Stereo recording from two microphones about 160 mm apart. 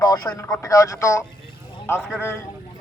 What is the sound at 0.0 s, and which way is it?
A man's voice, 25° left (ahead or behind).